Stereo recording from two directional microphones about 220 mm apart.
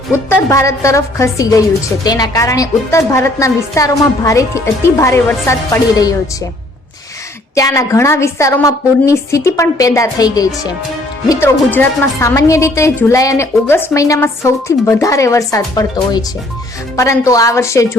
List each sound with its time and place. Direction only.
0.1 s a woman's voice: 10° left (ahead or behind)
7.5 s a woman's voice: 15° left (ahead or behind)